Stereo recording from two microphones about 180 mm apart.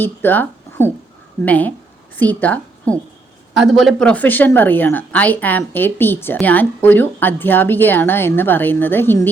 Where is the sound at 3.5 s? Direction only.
Centre (ahead or behind).